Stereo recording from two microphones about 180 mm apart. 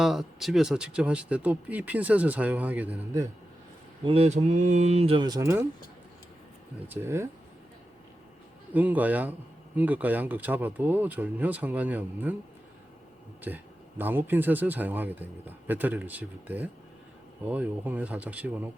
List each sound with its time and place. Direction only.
0.0 s speech: centre (ahead or behind)
4.0 s speech: 35° right (ahead or behind); by 5.6 s 15° right (ahead or behind)
6.8 s speech: 10° right (ahead or behind)
8.7 s speech: 10° right (ahead or behind)
13.5 s speech: 10° right (ahead or behind)